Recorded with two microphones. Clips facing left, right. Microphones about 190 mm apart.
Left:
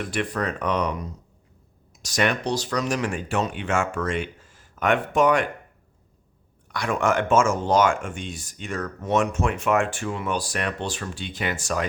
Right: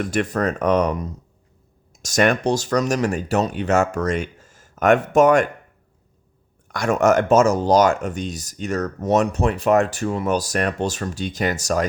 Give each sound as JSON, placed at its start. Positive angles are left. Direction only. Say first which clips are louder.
{"t": 0.0, "sound": "speech", "louder": "right 5 dB", "side_deg": -45}
{"t": 6.7, "sound": "speech", "louder": "right 6 dB", "side_deg": -45}